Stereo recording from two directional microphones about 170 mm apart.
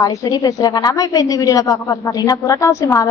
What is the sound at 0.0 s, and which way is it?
A woman's voice, 20° left (ahead or behind).